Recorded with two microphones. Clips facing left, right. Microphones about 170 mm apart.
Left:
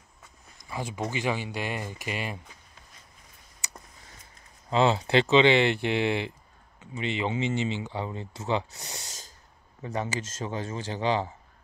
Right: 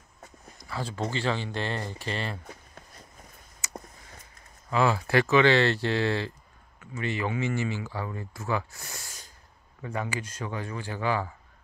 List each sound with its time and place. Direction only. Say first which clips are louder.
0.7 s speech: even; 15° left (ahead or behind)
4.6 s speech: left 2 dB; 25° left (ahead or behind)